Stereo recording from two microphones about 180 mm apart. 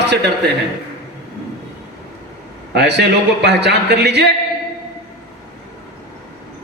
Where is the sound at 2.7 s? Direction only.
70° right (ahead or behind).